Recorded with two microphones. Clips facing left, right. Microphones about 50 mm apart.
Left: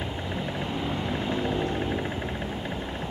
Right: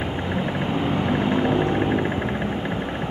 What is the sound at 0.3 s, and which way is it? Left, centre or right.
Vehicle, right.